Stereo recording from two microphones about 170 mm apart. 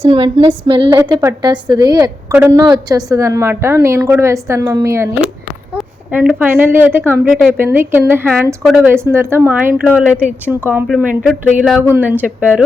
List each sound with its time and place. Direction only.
0.0 s a woman's voice: 30° right (ahead or behind)
6.1 s a woman's voice: 10° right (ahead or behind)
7.3 s speech: centre (ahead or behind)
7.5 s a woman's voice: 10° right (ahead or behind)
11.8 s a woman's voice: 10° right (ahead or behind)